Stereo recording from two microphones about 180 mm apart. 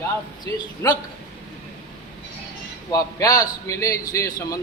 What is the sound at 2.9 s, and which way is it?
A man's voice, 20° left (ahead or behind).